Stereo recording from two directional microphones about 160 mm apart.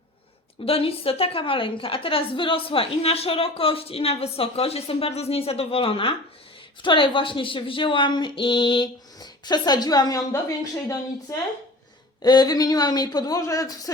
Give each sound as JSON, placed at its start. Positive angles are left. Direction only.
{"t": 0.6, "sound": "a woman's voice", "side_deg": 35}